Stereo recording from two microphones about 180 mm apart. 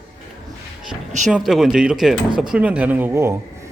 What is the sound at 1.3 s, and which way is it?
Speech, centre (ahead or behind).